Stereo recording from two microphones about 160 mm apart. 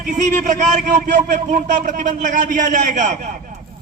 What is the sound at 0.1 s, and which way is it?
A man's voice, 50° right (ahead or behind).